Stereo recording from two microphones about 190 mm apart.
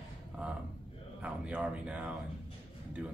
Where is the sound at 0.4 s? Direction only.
5° right (ahead or behind).